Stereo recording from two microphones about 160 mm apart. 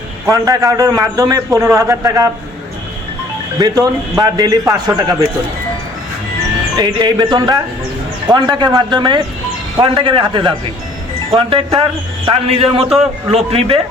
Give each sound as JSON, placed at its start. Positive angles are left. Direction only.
{"t": 0.3, "sound": "a man's voice", "side_deg": -20}
{"t": 3.6, "sound": "a man's voice", "side_deg": -25}
{"t": 6.7, "sound": "a man's voice", "side_deg": -25}